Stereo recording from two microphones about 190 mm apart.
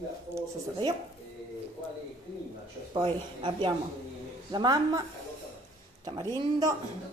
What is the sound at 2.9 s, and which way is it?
Speech, 25° right (ahead or behind).